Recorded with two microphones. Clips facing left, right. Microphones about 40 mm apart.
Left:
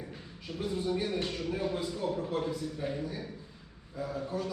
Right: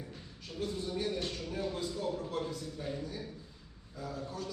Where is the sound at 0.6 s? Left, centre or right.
Centre.